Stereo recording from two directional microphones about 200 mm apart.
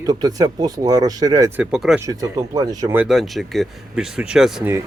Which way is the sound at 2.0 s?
15° right (ahead or behind).